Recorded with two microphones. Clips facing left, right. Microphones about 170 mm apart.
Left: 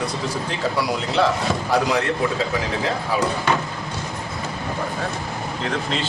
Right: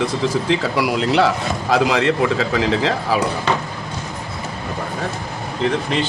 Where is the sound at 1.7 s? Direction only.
90° right.